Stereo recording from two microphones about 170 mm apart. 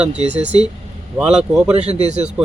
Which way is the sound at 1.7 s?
40° right (ahead or behind).